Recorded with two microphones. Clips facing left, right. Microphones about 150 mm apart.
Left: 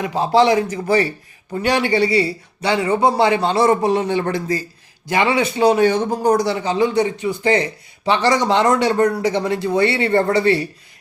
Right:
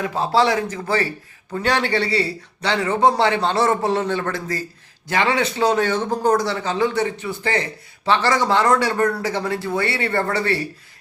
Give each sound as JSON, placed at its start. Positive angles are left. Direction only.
{"t": 0.0, "sound": "a man's voice", "side_deg": 15}